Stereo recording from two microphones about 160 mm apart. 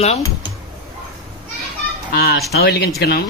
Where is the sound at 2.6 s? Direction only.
90° left.